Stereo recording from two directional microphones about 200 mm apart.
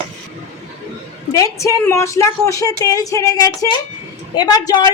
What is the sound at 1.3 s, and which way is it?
A woman's voice, 15° left (ahead or behind).